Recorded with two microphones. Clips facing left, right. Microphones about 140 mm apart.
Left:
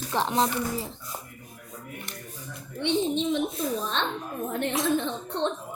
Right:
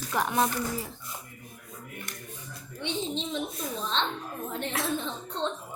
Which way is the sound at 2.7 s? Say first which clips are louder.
Left 7 dB; 60° left (ahead or behind).